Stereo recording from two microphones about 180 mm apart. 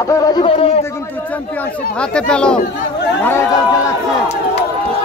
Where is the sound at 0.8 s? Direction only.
10° left (ahead or behind).